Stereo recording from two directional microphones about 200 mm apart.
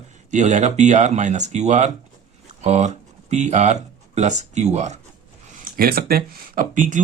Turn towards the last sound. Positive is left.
turn(degrees=-40)  # may be behind; listen again after turning